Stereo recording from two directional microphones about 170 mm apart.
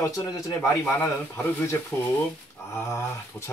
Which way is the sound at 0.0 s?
20° left (ahead or behind).